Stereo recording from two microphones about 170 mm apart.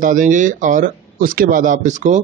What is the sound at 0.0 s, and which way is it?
Speech, 50° right (ahead or behind).